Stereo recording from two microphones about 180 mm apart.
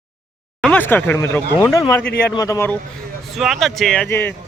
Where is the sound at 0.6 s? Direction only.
10° left (ahead or behind).